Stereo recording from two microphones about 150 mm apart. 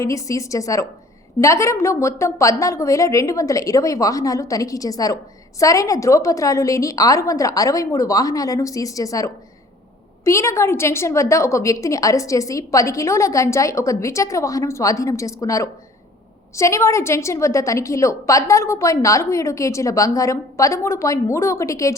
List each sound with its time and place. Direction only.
0.0 s a woman's voice: 20° left (ahead or behind)